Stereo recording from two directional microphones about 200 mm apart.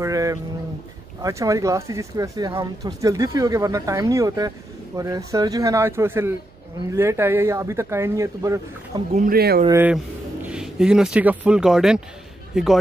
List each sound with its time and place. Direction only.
0.0 s speech: 15° right (ahead or behind)
9.1 s speech: 45° right (ahead or behind)
9.7 s speech: 10° right (ahead or behind)